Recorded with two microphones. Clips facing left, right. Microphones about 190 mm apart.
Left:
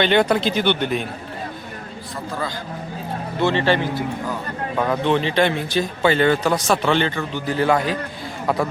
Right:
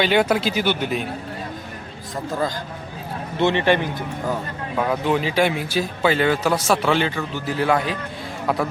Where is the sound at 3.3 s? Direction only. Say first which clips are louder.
Right 1 dB; 20° right (ahead or behind).